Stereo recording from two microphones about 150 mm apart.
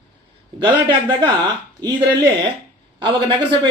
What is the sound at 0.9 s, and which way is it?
Speech, 30° right (ahead or behind).